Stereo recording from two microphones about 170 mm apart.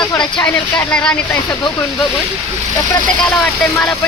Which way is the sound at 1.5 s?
25° left (ahead or behind).